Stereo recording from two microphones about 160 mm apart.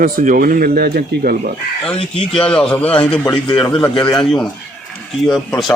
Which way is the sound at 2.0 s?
35° left (ahead or behind).